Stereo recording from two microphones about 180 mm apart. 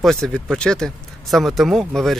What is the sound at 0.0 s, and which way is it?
Speech, centre (ahead or behind).